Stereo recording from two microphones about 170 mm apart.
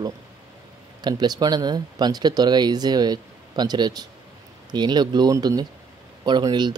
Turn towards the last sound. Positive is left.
turn(degrees=-25)  # may be behind; listen again after turning